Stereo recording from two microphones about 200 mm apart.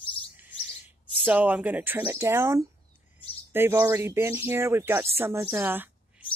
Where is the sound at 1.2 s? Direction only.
5° right (ahead or behind).